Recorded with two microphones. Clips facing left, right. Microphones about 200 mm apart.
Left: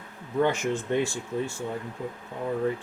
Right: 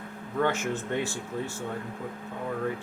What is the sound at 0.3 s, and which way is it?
Speech, 15° left (ahead or behind).